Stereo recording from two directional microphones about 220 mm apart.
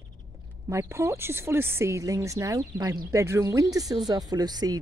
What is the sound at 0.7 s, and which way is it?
Speech, 15° right (ahead or behind).